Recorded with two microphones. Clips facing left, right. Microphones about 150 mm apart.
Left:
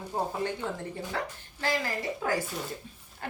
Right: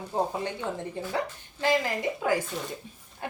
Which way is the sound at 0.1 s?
20° right (ahead or behind).